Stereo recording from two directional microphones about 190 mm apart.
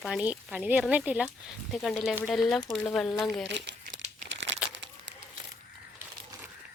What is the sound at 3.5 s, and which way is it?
Speech, 65° right (ahead or behind).